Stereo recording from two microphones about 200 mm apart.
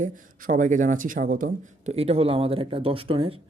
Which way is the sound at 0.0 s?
40° right (ahead or behind).